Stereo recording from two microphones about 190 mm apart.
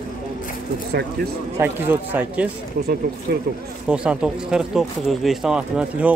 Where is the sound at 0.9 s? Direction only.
60° right (ahead or behind).